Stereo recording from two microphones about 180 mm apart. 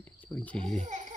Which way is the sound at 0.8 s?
40° right (ahead or behind).